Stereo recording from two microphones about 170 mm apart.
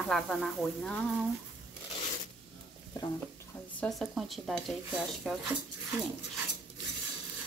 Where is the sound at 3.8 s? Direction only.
Centre (ahead or behind).